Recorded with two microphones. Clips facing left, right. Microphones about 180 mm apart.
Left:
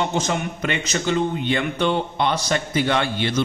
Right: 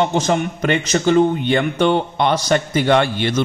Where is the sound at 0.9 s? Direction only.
50° right (ahead or behind).